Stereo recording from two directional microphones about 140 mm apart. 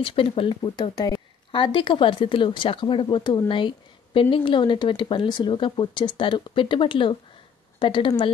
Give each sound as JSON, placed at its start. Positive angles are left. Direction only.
{"t": 0.0, "sound": "speech", "side_deg": 40}
{"t": 0.7, "sound": "speech", "side_deg": 30}